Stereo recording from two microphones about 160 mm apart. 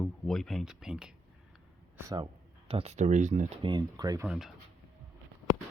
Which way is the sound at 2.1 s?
30° right (ahead or behind).